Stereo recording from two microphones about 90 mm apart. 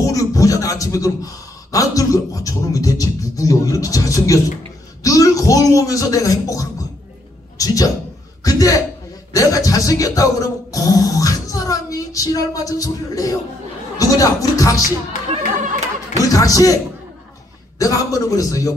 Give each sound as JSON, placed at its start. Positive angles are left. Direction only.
{"t": 0.0, "sound": "speech", "side_deg": 40}
{"t": 5.0, "sound": "music", "side_deg": 40}
{"t": 7.5, "sound": "a man's voice", "side_deg": 40}
{"t": 8.5, "sound": "music", "side_deg": 40}
{"t": 16.2, "sound": "music", "side_deg": 40}